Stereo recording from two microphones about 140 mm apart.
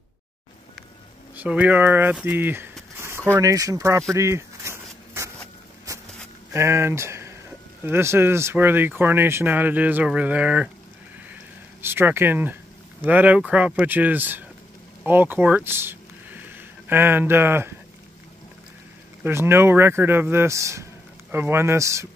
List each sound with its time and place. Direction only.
1.3 s speech: 10° right (ahead or behind)
3.0 s a sound: 20° right (ahead or behind)
3.3 s speech: 25° right (ahead or behind)
4.1 s a sound: 20° right (ahead or behind)
5.9 s walk: 25° right (ahead or behind)
6.5 s speech: 20° right (ahead or behind)
11.8 s speech: 15° right (ahead or behind)
19.2 s speech: 15° right (ahead or behind)